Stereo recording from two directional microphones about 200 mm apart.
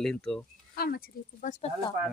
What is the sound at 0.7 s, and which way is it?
Speech, 50° left (ahead or behind).